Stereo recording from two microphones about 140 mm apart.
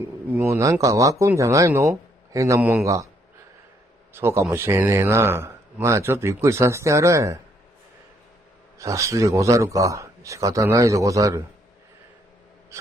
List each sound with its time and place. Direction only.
0.4 s a man's voice: 20° right (ahead or behind)
4.1 s a man's voice: 20° right (ahead or behind)
8.7 s a man's voice: 20° right (ahead or behind)